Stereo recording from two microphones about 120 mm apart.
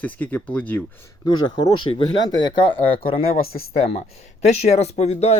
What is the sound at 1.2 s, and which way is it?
Speech, 35° left (ahead or behind).